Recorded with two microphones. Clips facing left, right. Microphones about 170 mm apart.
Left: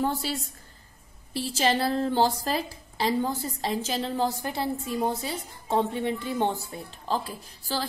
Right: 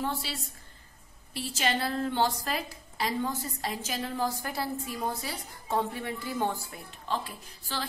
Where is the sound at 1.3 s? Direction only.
35° left (ahead or behind).